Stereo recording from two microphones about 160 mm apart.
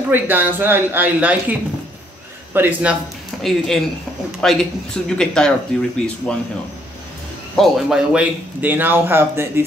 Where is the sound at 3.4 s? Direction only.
Centre (ahead or behind).